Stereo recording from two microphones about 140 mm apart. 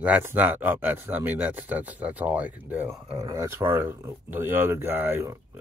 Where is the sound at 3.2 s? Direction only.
25° right (ahead or behind).